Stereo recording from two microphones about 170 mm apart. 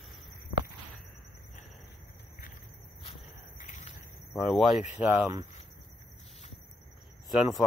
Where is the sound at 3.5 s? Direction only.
45° left (ahead or behind).